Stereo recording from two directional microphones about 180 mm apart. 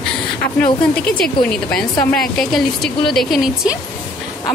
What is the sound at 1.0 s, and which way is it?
Speech, 5° left (ahead or behind).